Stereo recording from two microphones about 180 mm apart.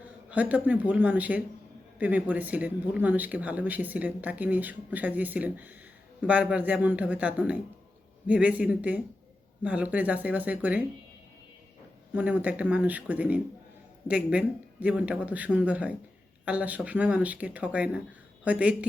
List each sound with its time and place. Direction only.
0.0 s a man's voice: 10° right (ahead or behind)
12.1 s speech: 10° right (ahead or behind)